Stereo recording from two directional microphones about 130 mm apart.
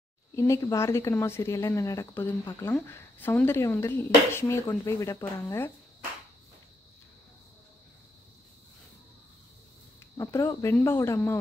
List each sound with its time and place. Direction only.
0.4 s speech: 20° left (ahead or behind)
10.1 s speech: 20° left (ahead or behind)